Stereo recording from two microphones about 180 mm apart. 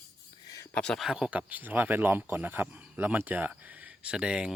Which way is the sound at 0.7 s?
5° left (ahead or behind).